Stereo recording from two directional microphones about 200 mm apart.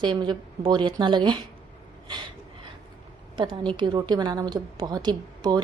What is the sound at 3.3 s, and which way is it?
A woman's voice, 25° right (ahead or behind).